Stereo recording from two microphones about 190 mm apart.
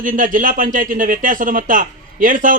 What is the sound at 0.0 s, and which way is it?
Speech, 45° right (ahead or behind).